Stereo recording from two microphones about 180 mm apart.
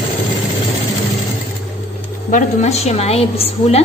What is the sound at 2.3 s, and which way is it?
A woman's voice, 40° left (ahead or behind).